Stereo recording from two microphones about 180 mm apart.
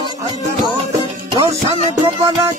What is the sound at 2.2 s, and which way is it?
Music, 20° right (ahead or behind).